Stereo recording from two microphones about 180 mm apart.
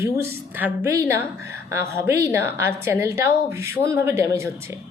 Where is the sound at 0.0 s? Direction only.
15° right (ahead or behind).